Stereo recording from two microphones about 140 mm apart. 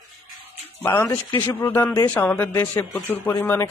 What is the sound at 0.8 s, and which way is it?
Speech, 15° left (ahead or behind).